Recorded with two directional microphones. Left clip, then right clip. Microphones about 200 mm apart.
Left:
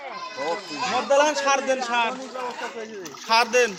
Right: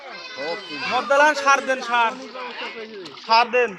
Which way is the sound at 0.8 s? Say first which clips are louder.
Right 3 dB; 30° right (ahead or behind).